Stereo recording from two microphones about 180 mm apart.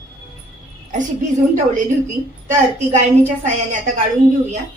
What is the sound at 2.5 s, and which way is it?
A woman's voice, 40° right (ahead or behind).